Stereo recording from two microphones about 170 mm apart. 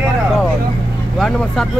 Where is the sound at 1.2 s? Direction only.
Centre (ahead or behind).